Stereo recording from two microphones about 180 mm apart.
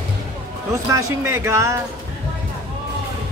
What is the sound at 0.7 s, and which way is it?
Speech, 15° right (ahead or behind).